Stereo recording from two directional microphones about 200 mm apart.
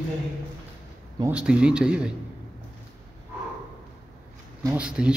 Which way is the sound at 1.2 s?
5° right (ahead or behind).